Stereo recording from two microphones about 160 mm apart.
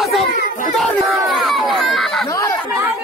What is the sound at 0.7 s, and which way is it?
Chatter, centre (ahead or behind).